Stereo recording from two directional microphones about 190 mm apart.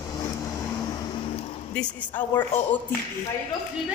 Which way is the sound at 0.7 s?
20° left (ahead or behind).